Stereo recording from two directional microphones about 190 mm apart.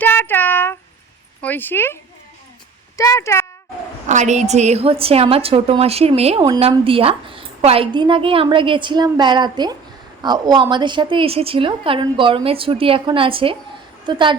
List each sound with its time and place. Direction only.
0.0 s child singing: 10° left (ahead or behind)
1.4 s speech: 10° left (ahead or behind)
3.0 s speech: 15° left (ahead or behind)
4.0 s a woman's voice: 40° right (ahead or behind)